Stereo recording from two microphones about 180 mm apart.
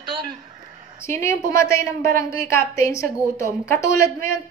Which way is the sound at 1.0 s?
15° left (ahead or behind).